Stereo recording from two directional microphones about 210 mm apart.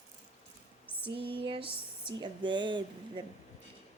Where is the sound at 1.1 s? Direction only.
25° right (ahead or behind).